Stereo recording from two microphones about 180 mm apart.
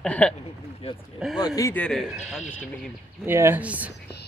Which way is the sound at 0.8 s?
35° left (ahead or behind).